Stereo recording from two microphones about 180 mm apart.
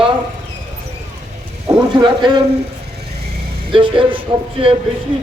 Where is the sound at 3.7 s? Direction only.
30° right (ahead or behind).